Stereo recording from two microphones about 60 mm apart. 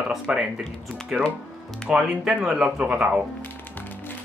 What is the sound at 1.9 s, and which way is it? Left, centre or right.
Speech, centre.